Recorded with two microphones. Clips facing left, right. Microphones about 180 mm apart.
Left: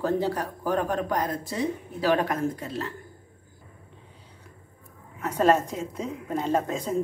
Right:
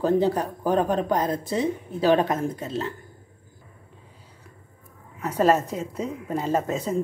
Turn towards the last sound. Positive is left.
turn(degrees=-5)  # may be behind; listen again after turning